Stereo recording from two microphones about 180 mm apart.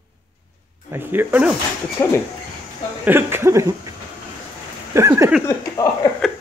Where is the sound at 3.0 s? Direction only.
10° right (ahead or behind).